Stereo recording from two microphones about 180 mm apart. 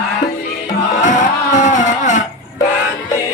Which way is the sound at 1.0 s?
45° left (ahead or behind).